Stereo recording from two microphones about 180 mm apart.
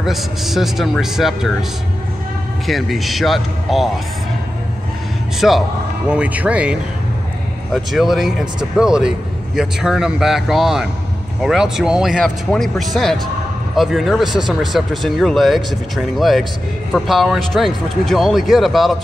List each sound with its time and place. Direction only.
0.0 s speech: centre (ahead or behind)
2.6 s speech: centre (ahead or behind)
5.4 s speech: centre (ahead or behind)